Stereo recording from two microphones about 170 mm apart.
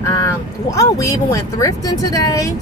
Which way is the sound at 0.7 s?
20° left (ahead or behind).